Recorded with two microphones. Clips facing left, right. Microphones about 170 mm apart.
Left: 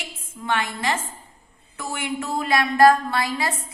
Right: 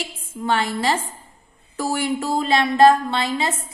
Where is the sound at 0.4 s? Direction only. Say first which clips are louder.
Right 4 dB; 35° right (ahead or behind).